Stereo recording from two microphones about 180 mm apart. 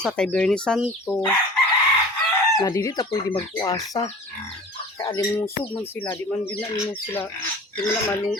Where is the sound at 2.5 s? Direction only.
20° left (ahead or behind).